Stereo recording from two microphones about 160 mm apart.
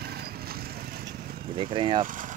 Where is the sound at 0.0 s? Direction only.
75° right (ahead or behind).